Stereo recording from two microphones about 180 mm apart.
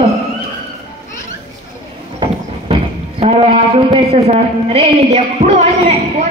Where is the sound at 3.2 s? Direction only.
35° right (ahead or behind).